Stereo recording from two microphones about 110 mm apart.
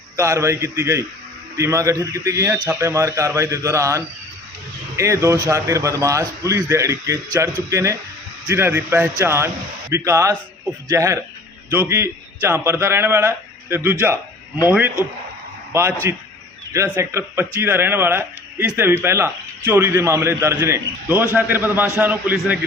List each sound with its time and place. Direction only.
0.2 s a man's voice: 25° right (ahead or behind)